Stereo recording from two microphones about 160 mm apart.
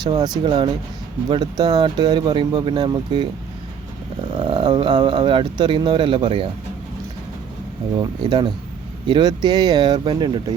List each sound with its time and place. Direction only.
0.0 s speech: 25° right (ahead or behind)
4.3 s speech: 30° right (ahead or behind)
8.2 s speech: 30° right (ahead or behind)